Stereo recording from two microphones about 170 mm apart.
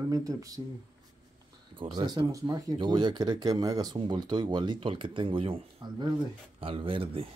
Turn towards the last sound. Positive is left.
turn(degrees=-35)  # may be behind; listen again after turning